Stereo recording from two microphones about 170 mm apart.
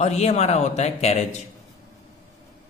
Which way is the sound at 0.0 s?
40° left (ahead or behind).